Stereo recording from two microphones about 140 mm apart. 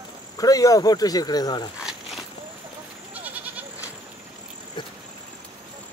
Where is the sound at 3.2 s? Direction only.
10° right (ahead or behind).